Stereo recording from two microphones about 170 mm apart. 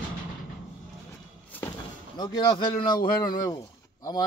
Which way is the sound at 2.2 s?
25° left (ahead or behind).